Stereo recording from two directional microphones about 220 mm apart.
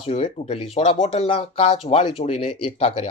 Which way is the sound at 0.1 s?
30° left (ahead or behind).